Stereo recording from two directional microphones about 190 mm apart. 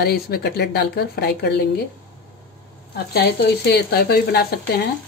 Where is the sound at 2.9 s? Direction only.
55° left (ahead or behind).